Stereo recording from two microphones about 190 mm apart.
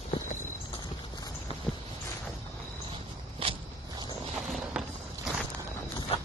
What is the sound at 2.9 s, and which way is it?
Walk, 25° right (ahead or behind).